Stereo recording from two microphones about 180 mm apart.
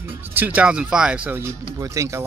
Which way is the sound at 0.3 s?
10° right (ahead or behind).